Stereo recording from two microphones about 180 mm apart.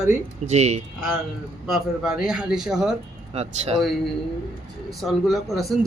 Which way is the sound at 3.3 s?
35° right (ahead or behind).